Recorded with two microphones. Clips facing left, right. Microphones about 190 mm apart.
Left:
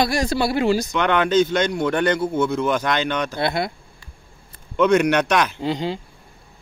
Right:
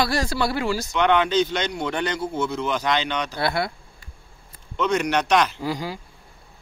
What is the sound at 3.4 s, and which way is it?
Speech, 20° left (ahead or behind).